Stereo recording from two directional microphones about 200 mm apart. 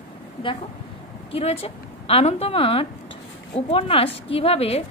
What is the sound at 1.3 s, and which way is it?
A woman's voice, 30° left (ahead or behind).